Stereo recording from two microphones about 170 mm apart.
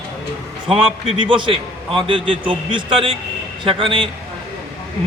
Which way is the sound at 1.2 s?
30° right (ahead or behind).